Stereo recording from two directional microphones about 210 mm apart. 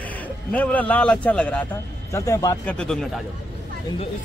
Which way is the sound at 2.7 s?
5° left (ahead or behind).